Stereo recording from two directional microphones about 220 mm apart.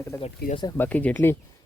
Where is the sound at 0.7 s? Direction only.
10° left (ahead or behind).